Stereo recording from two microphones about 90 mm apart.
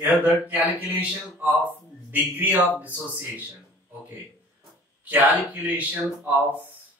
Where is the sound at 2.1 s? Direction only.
20° right (ahead or behind).